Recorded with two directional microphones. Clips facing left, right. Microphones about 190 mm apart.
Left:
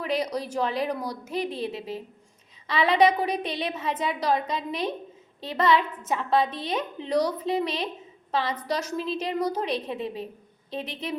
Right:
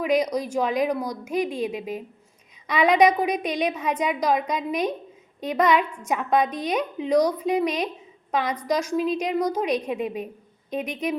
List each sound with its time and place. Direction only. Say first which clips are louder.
0.0 s a woman's voice: right 5 dB; 15° right (ahead or behind)